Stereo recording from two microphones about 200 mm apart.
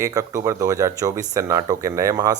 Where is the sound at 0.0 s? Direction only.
15° right (ahead or behind).